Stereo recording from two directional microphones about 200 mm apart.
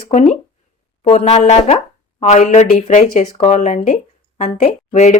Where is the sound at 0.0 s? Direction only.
35° left (ahead or behind).